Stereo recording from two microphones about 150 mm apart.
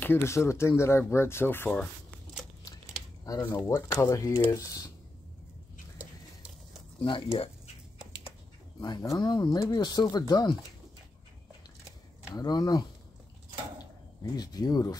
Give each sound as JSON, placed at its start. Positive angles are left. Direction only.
{"t": 0.0, "sound": "speech", "side_deg": 15}
{"t": 3.3, "sound": "speech", "side_deg": 25}
{"t": 7.0, "sound": "speech", "side_deg": 35}
{"t": 8.7, "sound": "speech", "side_deg": 25}
{"t": 12.4, "sound": "speech", "side_deg": 25}
{"t": 14.3, "sound": "speech", "side_deg": 25}